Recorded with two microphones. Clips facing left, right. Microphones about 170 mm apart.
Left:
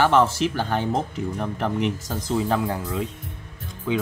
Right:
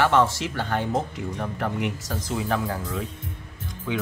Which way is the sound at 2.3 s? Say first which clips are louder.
Left 4 dB; 30° left (ahead or behind).